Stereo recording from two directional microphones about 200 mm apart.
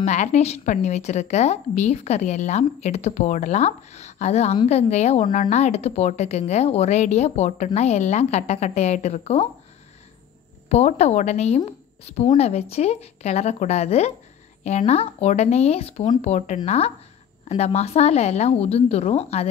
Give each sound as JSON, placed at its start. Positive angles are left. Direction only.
{"t": 0.0, "sound": "speech", "side_deg": 35}
{"t": 10.7, "sound": "speech", "side_deg": 30}